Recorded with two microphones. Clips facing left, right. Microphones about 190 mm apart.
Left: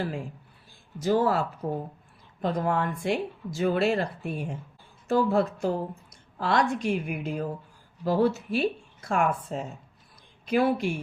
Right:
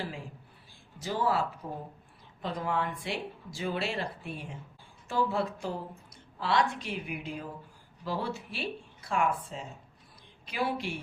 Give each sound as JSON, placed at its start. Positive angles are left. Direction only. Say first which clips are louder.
{"t": 0.9, "sound": "speech", "louder": "left 6 dB", "side_deg": 45}